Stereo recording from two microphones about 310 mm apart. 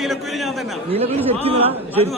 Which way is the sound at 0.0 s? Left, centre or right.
Centre.